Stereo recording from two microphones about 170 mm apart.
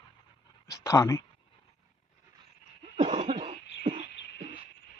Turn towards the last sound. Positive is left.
turn(degrees=-35)  # may be behind; listen again after turning